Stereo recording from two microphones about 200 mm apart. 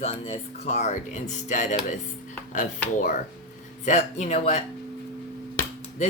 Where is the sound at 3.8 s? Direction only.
35° left (ahead or behind).